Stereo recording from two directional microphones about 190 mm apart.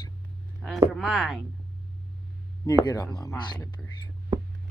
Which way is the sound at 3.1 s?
20° left (ahead or behind).